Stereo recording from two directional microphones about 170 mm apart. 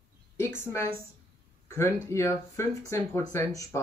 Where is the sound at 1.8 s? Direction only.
15° left (ahead or behind).